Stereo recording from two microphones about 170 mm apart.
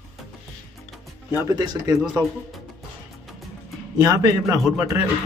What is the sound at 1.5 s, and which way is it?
Speech, 20° right (ahead or behind).